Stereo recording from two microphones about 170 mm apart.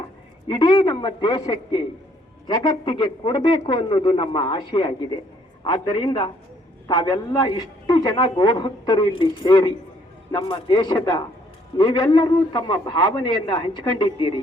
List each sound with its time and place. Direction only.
0.4 s a man's voice: 25° left (ahead or behind)